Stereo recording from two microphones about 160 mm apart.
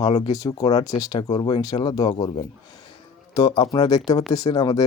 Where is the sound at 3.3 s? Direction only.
25° left (ahead or behind).